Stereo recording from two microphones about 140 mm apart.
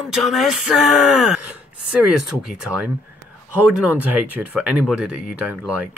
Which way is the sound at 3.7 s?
10° right (ahead or behind).